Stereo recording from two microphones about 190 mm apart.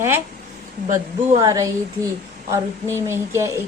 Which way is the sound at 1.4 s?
20° right (ahead or behind).